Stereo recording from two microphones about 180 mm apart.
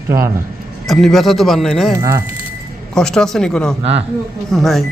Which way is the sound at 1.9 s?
15° right (ahead or behind).